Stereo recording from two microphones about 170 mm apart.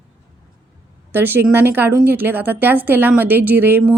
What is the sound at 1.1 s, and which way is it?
A woman's voice, 10° right (ahead or behind).